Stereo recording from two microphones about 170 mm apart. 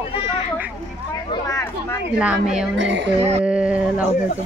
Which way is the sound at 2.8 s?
90° right.